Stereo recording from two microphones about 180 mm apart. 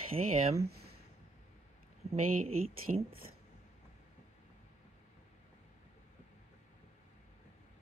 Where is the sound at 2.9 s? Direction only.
40° right (ahead or behind).